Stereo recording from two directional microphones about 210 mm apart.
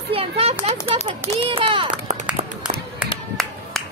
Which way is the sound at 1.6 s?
25° right (ahead or behind).